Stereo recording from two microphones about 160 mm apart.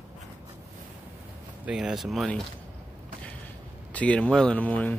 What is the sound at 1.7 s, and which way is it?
Speech, 5° right (ahead or behind).